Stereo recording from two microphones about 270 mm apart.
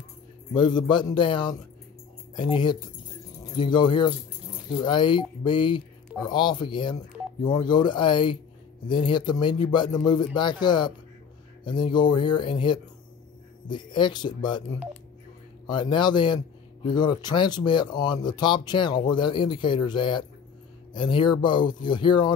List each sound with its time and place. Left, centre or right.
0.6 s speech: centre
15.6 s speech: centre